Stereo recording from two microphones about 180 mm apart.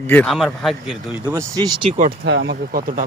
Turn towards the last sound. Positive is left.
turn(degrees=-50)  # may be behind; listen again after turning